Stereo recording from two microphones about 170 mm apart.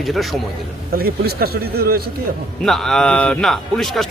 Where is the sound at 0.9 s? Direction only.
60° right (ahead or behind).